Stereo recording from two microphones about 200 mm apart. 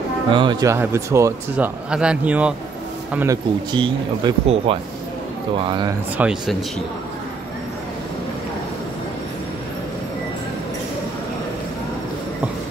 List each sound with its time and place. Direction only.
0.3 s a man's voice: 25° right (ahead or behind)
3.7 s speech: 25° right (ahead or behind)
6.1 s a man's voice: 5° right (ahead or behind)